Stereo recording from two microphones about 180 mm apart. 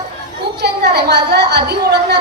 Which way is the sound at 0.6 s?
65° right (ahead or behind).